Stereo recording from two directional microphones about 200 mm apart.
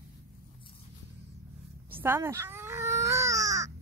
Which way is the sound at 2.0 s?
10° right (ahead or behind).